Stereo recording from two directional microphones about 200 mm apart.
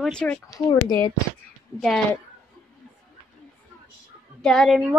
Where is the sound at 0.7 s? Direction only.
15° left (ahead or behind).